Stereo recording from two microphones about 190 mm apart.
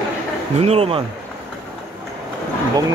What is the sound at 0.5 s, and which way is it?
Speech, 30° right (ahead or behind).